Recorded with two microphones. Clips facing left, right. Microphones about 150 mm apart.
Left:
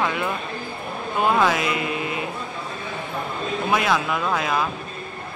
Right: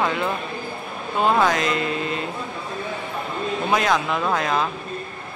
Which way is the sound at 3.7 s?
5° left (ahead or behind).